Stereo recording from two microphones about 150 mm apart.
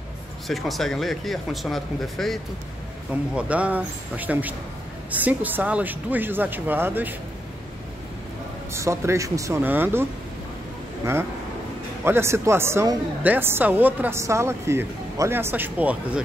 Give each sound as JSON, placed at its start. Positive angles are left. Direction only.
{"t": 0.5, "sound": "speech", "side_deg": 0}
{"t": 3.3, "sound": "a woman's voice", "side_deg": -10}
{"t": 8.7, "sound": "a woman's voice", "side_deg": -20}
{"t": 12.0, "sound": "a woman's voice", "side_deg": -15}